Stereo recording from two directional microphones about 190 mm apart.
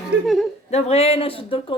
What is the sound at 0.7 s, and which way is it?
Speech, 35° left (ahead or behind).